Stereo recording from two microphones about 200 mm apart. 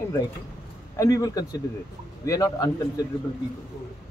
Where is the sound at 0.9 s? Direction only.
15° left (ahead or behind).